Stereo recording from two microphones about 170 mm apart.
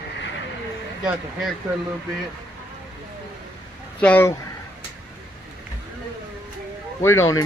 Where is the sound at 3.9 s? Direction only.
10° left (ahead or behind).